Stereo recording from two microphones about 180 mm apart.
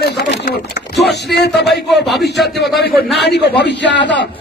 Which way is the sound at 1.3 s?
70° left (ahead or behind).